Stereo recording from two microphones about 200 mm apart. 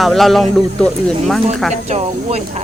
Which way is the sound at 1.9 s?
35° right (ahead or behind).